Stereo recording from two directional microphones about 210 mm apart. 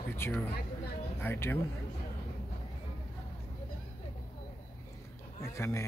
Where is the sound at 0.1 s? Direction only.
10° left (ahead or behind).